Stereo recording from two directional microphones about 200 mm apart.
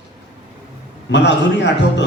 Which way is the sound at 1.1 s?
60° left (ahead or behind).